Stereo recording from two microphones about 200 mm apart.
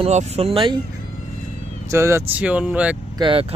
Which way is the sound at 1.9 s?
15° right (ahead or behind).